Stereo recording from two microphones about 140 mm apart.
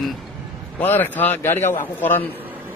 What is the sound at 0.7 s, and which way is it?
A man's voice, 15° left (ahead or behind).